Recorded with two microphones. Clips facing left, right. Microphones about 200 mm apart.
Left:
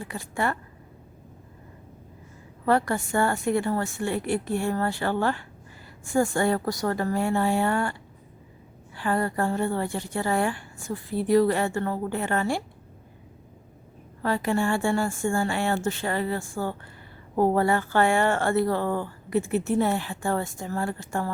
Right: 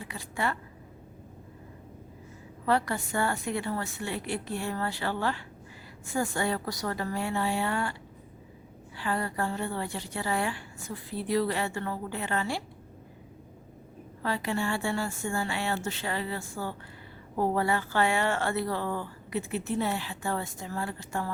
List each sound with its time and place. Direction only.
0.0 s a woman's voice: 50° left (ahead or behind)
2.6 s a woman's voice: 50° left (ahead or behind)
9.0 s a woman's voice: 50° left (ahead or behind)
14.2 s a woman's voice: 50° left (ahead or behind)